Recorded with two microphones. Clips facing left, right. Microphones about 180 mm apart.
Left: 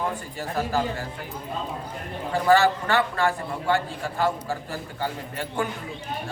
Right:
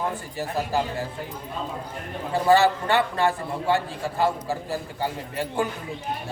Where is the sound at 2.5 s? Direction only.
20° right (ahead or behind).